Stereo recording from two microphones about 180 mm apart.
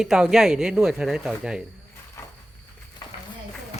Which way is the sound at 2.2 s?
15° left (ahead or behind).